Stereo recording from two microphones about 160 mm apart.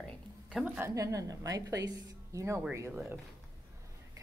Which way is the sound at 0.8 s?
20° right (ahead or behind).